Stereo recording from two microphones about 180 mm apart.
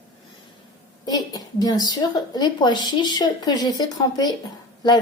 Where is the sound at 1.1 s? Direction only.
20° left (ahead or behind).